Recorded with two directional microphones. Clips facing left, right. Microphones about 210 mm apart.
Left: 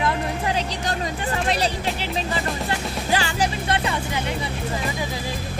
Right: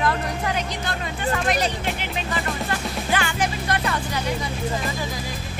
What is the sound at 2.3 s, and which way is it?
Music, 30° left (ahead or behind).